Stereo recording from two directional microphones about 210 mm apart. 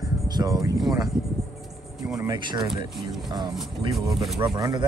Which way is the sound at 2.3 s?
20° right (ahead or behind).